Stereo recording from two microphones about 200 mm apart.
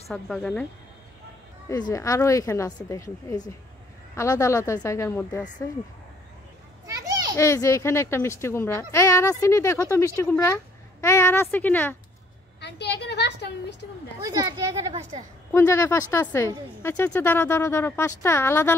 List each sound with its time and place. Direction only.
0.1 s speech: 5° left (ahead or behind)
1.7 s speech: 20° left (ahead or behind)
6.9 s children playing: 15° right (ahead or behind)
7.3 s speech: 15° left (ahead or behind)
12.5 s a sound: 55° left (ahead or behind)
14.9 s a woman's voice: 30° right (ahead or behind)
15.5 s speech: 15° left (ahead or behind)